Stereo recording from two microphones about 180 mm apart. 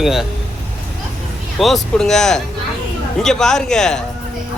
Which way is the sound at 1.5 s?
Centre (ahead or behind).